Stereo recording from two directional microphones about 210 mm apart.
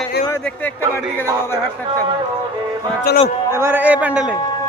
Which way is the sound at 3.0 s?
35° left (ahead or behind).